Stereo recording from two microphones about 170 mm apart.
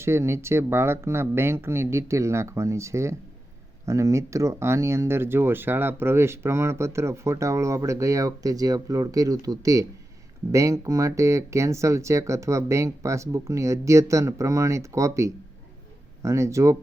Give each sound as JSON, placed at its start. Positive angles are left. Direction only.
{"t": 0.0, "sound": "speech", "side_deg": -15}